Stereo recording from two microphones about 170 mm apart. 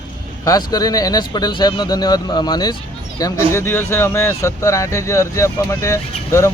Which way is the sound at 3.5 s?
15° left (ahead or behind).